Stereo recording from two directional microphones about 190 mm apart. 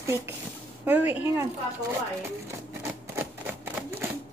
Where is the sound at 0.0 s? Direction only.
10° right (ahead or behind).